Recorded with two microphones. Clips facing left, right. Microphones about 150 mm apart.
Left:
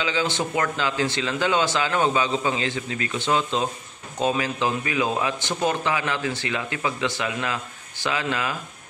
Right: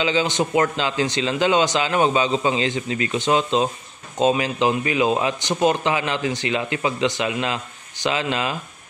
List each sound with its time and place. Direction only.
0.0 s a man's voice: 20° right (ahead or behind)